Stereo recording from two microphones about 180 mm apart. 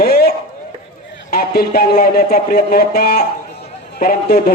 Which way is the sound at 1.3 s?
60° left (ahead or behind).